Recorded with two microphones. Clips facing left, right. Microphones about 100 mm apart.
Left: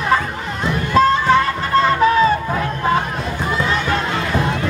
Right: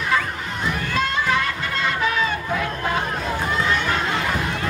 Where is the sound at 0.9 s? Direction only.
35° left (ahead or behind).